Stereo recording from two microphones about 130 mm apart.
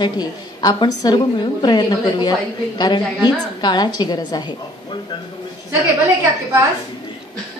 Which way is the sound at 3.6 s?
35° left (ahead or behind).